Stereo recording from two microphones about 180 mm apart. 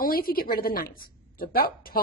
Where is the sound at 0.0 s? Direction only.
55° left (ahead or behind).